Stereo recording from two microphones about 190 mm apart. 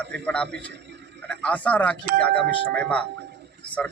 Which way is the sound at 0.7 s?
65° right (ahead or behind).